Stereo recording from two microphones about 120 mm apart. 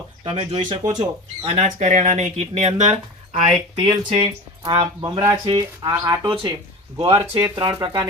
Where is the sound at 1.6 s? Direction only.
80° right.